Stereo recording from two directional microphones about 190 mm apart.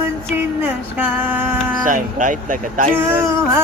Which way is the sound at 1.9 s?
45° right (ahead or behind).